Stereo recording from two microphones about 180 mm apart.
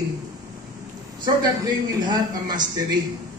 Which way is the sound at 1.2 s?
20° right (ahead or behind).